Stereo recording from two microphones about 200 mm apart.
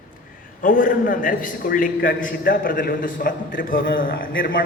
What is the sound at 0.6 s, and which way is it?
A man's voice, 45° left (ahead or behind).